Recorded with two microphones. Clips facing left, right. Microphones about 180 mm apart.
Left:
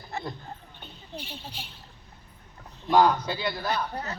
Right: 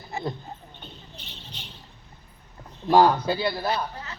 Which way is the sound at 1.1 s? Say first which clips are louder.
Left 6 dB; 10° left (ahead or behind).